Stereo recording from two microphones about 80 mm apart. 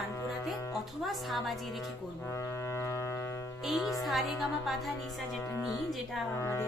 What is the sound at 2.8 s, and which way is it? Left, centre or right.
Music, left.